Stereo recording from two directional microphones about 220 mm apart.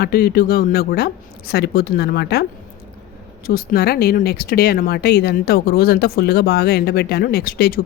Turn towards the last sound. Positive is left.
turn(degrees=40)  # may be behind; listen again after turning